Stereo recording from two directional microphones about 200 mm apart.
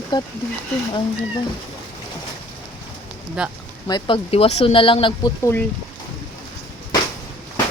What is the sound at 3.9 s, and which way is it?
Speech, 25° left (ahead or behind).